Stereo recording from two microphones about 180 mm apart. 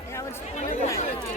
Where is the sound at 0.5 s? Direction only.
40° left (ahead or behind).